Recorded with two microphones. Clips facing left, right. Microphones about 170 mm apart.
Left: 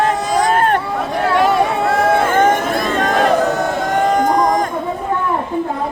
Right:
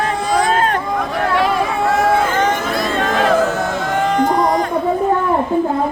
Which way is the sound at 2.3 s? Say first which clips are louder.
Left 3 dB; 50° left (ahead or behind).